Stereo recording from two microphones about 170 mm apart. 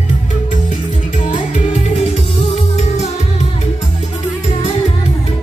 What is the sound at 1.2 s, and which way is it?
Music, 45° left (ahead or behind).